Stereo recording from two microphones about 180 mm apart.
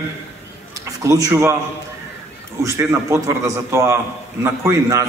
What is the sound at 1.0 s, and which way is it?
Speech, 15° right (ahead or behind).